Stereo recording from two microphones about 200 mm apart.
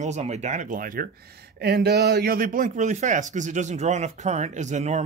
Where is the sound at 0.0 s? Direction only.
35° right (ahead or behind).